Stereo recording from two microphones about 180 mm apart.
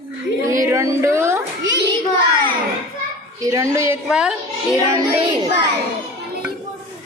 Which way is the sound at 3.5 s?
15° right (ahead or behind).